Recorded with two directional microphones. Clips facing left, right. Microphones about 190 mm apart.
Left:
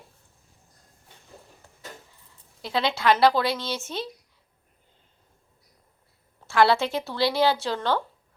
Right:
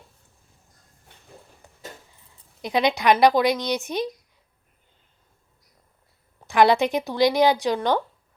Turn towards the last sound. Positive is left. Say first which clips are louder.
# right 4 dB
turn(degrees=-15)  # may be behind; listen again after turning